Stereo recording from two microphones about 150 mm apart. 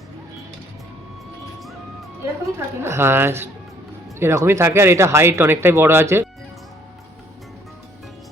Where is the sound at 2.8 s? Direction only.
15° right (ahead or behind).